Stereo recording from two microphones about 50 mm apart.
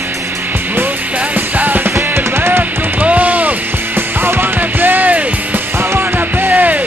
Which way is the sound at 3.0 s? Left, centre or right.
Right.